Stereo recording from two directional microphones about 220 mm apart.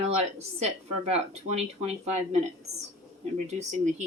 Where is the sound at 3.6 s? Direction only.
30° right (ahead or behind).